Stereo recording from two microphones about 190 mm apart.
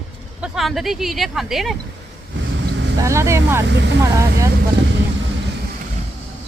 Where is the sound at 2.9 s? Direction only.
15° right (ahead or behind).